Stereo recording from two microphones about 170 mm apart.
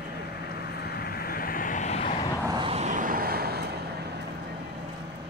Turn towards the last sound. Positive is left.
turn(degrees=-65)  # may be behind; listen again after turning